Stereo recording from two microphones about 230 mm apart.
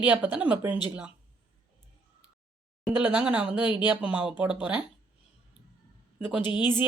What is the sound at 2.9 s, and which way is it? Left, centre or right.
Speech, centre.